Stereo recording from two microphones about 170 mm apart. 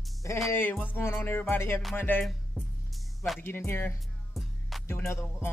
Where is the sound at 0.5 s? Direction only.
10° left (ahead or behind).